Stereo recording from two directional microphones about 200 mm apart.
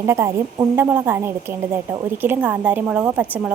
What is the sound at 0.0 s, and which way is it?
A woman's voice, 15° right (ahead or behind).